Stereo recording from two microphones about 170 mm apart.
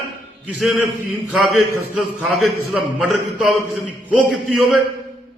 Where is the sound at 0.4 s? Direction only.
5° right (ahead or behind).